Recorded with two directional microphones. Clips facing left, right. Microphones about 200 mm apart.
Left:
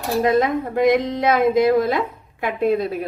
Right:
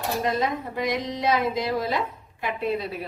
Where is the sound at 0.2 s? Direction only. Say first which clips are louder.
Left 10 dB; 55° left (ahead or behind).